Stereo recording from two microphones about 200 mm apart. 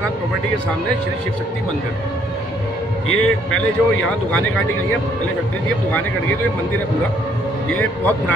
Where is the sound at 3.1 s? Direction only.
90° left.